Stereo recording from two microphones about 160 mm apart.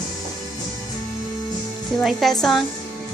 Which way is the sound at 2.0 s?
Centre (ahead or behind).